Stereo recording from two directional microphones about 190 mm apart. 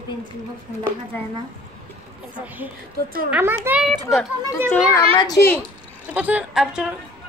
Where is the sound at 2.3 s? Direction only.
10° right (ahead or behind).